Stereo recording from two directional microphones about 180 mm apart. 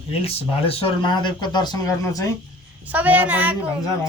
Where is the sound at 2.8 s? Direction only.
10° right (ahead or behind).